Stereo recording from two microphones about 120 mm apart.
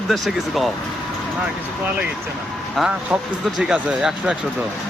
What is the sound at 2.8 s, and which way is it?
A man's voice, 5° right (ahead or behind).